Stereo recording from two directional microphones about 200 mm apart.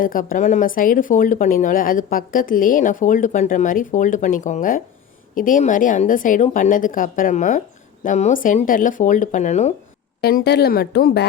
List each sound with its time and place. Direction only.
0.0 s a woman's voice: 45° left (ahead or behind)
10.2 s speech: 50° left (ahead or behind)